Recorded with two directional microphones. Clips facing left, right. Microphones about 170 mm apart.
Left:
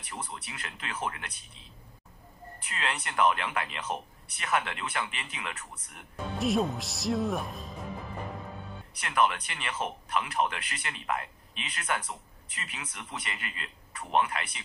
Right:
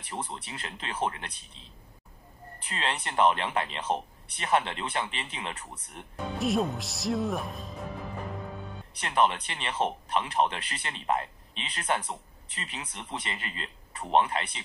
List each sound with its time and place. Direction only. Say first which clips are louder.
0.1 s speech: right 4 dB; 25° right (ahead or behind)
2.6 s speech: right 2 dB; 30° right (ahead or behind)
6.1 s speech: even; centre (ahead or behind)
9.0 s speech: right 2 dB; 25° right (ahead or behind)